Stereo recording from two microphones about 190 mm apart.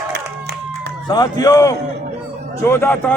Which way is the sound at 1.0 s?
20° left (ahead or behind).